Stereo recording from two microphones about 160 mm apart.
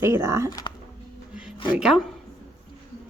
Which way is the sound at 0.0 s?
15° right (ahead or behind).